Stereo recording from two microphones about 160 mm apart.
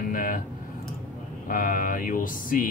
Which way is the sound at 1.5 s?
60° left (ahead or behind).